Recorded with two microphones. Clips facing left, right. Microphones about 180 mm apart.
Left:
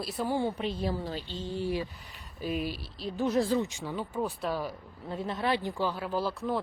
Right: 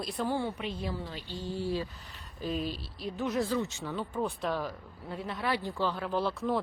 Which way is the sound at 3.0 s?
30° left (ahead or behind).